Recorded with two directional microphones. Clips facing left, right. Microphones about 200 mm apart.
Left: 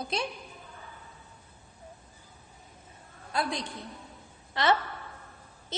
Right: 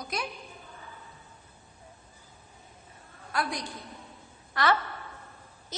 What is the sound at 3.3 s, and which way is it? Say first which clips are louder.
Speech: left 1 dB; 25° left (ahead or behind).